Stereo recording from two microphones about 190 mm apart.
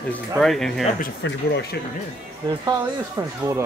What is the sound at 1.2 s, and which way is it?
Speech, 60° left (ahead or behind).